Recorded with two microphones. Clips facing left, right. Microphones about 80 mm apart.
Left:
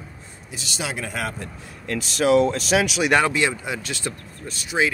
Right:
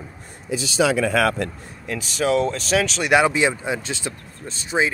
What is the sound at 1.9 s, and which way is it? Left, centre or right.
Speech, centre.